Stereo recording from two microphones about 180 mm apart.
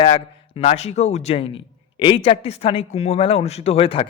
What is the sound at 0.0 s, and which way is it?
Speech, 30° left (ahead or behind).